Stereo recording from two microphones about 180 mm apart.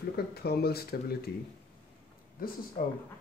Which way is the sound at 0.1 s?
60° left (ahead or behind).